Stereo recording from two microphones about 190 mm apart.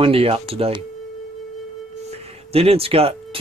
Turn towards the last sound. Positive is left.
turn(degrees=-30)  # may be behind; listen again after turning